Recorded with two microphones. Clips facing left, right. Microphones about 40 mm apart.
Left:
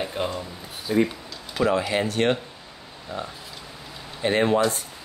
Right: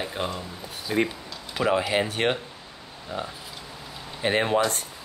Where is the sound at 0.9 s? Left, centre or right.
Right.